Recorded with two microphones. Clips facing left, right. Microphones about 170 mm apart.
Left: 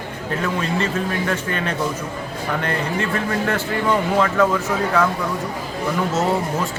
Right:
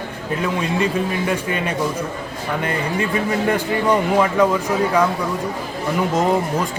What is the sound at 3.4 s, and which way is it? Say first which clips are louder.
Speech: right 4 dB; 15° right (ahead or behind).